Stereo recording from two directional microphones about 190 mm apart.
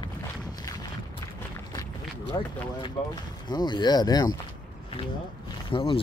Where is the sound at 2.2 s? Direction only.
25° left (ahead or behind).